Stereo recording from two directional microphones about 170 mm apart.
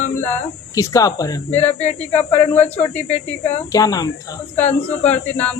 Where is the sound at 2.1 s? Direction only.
40° left (ahead or behind).